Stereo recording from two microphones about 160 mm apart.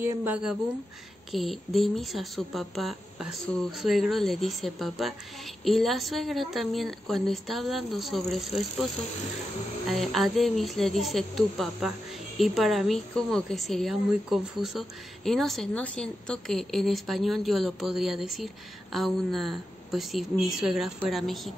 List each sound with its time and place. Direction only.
0.0 s a woman's voice: 10° right (ahead or behind)
9.8 s a woman's voice: centre (ahead or behind)